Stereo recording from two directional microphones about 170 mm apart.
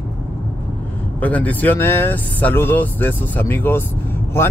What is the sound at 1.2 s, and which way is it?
Speech, 10° left (ahead or behind).